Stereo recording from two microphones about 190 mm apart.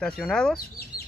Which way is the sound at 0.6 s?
55° left (ahead or behind).